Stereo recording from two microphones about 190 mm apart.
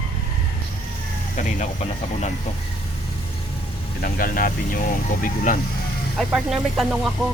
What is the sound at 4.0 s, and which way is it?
Speech, 45° left (ahead or behind).